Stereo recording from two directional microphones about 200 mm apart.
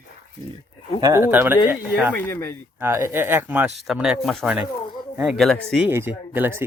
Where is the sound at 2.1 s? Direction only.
10° left (ahead or behind).